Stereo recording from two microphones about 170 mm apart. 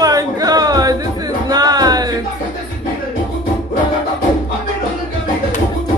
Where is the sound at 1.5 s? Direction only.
25° right (ahead or behind).